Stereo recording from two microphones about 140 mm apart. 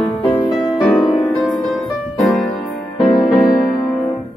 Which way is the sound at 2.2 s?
Centre (ahead or behind).